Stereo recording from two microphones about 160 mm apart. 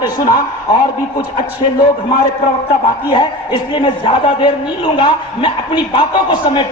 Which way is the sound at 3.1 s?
30° left (ahead or behind).